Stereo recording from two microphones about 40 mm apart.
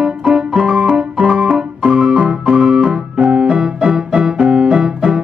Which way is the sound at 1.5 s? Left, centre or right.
Centre.